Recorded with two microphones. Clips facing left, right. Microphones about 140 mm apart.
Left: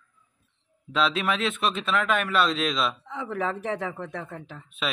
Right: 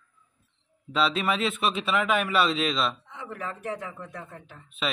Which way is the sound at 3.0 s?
90° left.